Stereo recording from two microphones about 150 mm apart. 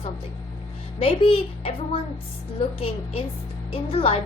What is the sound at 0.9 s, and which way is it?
A woman's voice, 40° left (ahead or behind).